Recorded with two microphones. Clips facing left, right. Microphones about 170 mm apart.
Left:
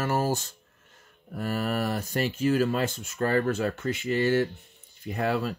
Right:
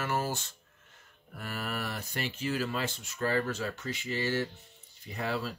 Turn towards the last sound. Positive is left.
turn(degrees=55)  # may be behind; listen again after turning